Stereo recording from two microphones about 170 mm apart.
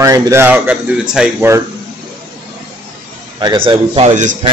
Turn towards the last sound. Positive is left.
turn(degrees=-45)  # may be behind; listen again after turning